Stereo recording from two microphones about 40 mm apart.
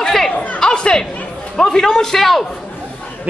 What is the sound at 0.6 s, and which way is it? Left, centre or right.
Speech, left.